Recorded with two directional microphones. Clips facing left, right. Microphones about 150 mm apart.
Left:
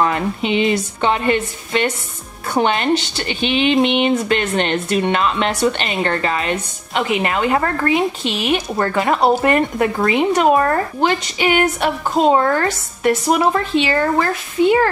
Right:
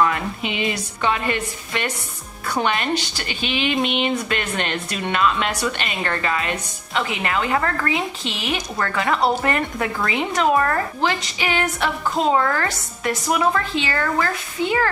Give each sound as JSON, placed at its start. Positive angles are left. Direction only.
{"t": 0.0, "sound": "speech", "side_deg": 30}